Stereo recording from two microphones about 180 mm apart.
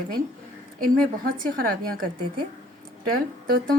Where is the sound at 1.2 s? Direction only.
55° right (ahead or behind).